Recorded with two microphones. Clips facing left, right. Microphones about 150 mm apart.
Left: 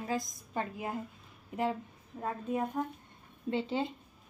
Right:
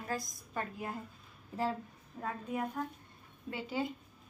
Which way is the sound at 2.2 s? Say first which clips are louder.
Left 3 dB; 15° left (ahead or behind).